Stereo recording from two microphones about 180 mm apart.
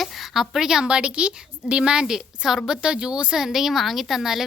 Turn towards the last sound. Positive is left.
turn(degrees=0)  # may be behind; listen again after turning